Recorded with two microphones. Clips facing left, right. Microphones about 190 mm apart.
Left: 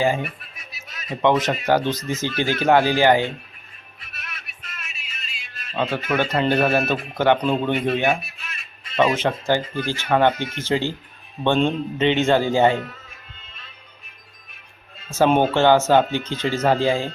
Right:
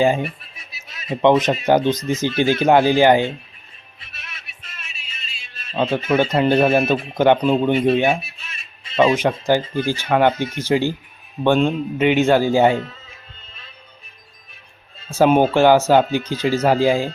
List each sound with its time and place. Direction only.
0.0 s speech: 25° right (ahead or behind)
4.0 s music: 50° left (ahead or behind)
4.6 s music: 30° right (ahead or behind)
6.1 s speech: 15° right (ahead or behind)
7.9 s speech: 25° right (ahead or behind)
9.1 s speech: 15° right (ahead or behind)
15.1 s speech: 10° right (ahead or behind)